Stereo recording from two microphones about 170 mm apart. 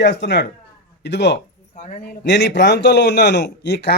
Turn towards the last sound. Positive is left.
turn(degrees=85)